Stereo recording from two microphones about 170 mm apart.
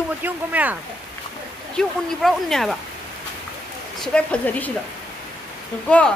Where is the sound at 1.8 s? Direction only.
Centre (ahead or behind).